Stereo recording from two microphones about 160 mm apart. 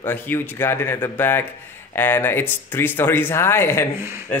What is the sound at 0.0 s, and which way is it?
Speech, 15° left (ahead or behind).